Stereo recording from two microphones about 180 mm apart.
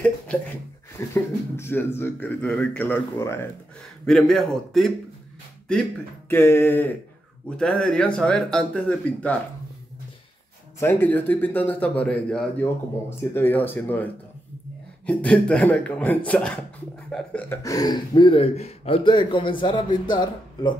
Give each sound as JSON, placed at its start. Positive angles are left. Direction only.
{"t": 0.9, "sound": "speech", "side_deg": 15}
{"t": 6.2, "sound": "speech", "side_deg": 10}
{"t": 10.8, "sound": "speech", "side_deg": 10}